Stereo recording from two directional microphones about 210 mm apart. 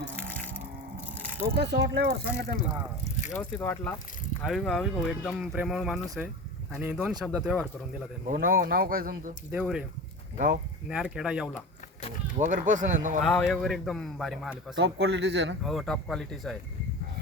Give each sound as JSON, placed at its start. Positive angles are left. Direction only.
{"t": 0.3, "sound": "a sound", "side_deg": 5}
{"t": 1.5, "sound": "speech", "side_deg": -55}
{"t": 3.0, "sound": "a sound", "side_deg": 35}
{"t": 3.3, "sound": "speech", "side_deg": 10}
{"t": 8.3, "sound": "speech", "side_deg": -40}
{"t": 9.5, "sound": "speech", "side_deg": -5}
{"t": 10.3, "sound": "speech", "side_deg": -40}
{"t": 10.8, "sound": "speech", "side_deg": -5}
{"t": 12.4, "sound": "speech", "side_deg": -40}
{"t": 13.2, "sound": "speech", "side_deg": 0}
{"t": 14.8, "sound": "speech", "side_deg": -70}
{"t": 15.6, "sound": "speech", "side_deg": 0}